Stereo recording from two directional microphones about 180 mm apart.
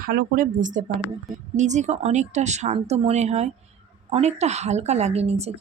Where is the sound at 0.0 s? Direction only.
55° right (ahead or behind).